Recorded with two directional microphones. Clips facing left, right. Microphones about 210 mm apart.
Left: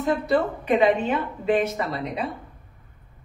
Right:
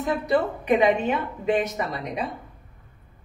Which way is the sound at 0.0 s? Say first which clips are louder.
Left 1 dB; 15° right (ahead or behind).